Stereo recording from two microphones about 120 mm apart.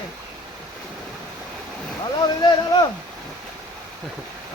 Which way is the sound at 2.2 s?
35° left (ahead or behind).